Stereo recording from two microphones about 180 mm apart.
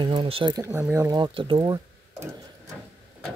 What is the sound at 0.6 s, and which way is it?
Speech, 15° right (ahead or behind).